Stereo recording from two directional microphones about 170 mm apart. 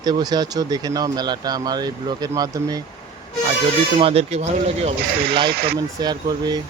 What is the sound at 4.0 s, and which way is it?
Speech, 35° right (ahead or behind).